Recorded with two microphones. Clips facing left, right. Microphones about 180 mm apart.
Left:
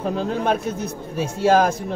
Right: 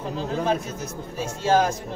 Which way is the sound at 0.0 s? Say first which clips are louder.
Left 4 dB; 60° left (ahead or behind).